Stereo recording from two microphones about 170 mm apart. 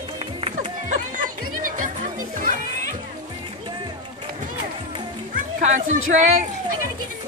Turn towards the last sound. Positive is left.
turn(degrees=-45)  # may be behind; listen again after turning